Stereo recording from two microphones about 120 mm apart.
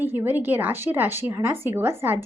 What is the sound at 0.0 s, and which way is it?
Speech, 15° right (ahead or behind).